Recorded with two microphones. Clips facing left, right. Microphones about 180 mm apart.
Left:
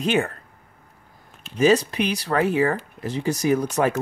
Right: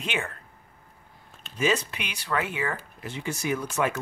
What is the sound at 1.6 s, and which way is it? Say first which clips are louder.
Speech: left 8 dB; 35° left (ahead or behind).